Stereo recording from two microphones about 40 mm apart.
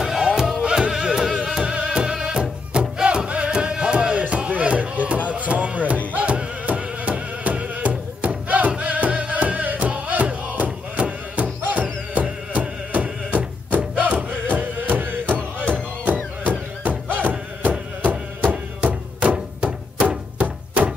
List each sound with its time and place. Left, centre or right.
0.0 s music: centre; by 20.9 s right